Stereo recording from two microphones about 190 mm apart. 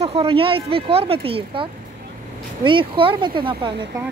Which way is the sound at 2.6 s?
25° right (ahead or behind).